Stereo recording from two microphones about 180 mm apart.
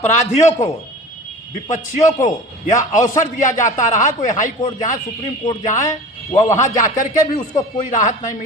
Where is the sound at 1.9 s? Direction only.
45° left (ahead or behind).